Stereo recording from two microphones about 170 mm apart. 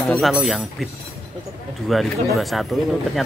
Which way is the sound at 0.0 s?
Centre (ahead or behind).